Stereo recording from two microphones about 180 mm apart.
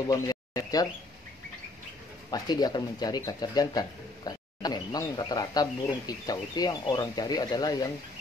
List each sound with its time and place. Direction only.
0.1 s bird: 20° left (ahead or behind)
2.3 s speech: 20° left (ahead or behind)